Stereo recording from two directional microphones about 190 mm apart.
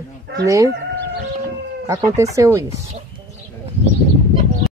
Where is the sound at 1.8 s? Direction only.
15° right (ahead or behind).